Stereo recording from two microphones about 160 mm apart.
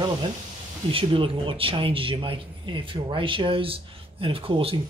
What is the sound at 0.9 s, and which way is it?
Speech, 35° right (ahead or behind).